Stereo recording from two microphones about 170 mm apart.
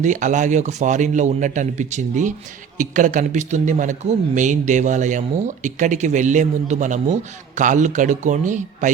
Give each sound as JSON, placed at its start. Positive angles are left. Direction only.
{"t": 0.0, "sound": "a man's voice", "side_deg": -45}